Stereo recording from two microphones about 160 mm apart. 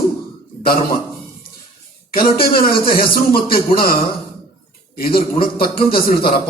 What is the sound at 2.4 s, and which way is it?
A man's voice, 65° left (ahead or behind).